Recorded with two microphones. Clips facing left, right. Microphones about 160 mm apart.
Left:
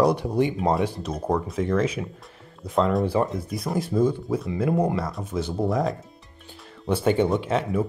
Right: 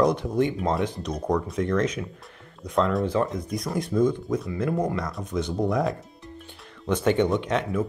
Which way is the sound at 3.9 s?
15° left (ahead or behind).